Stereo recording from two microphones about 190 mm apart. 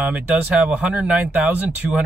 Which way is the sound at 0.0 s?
5° right (ahead or behind).